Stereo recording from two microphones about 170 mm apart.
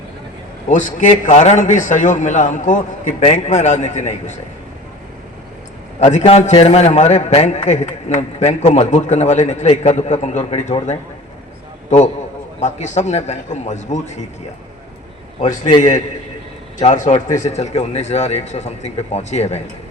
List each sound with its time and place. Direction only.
0.7 s a man's voice: 50° left (ahead or behind)
6.0 s a man's voice: 40° left (ahead or behind)
12.5 s a man's voice: 45° left (ahead or behind)
15.4 s a man's voice: 45° left (ahead or behind)
16.8 s a man's voice: 45° left (ahead or behind)